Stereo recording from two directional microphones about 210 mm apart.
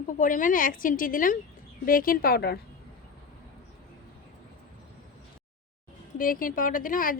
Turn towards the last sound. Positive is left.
turn(degrees=40)  # may be behind; listen again after turning